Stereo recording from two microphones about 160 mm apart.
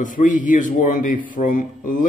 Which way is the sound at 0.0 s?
55° left (ahead or behind).